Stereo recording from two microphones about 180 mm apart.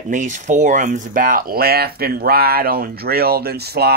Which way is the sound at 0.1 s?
45° right (ahead or behind).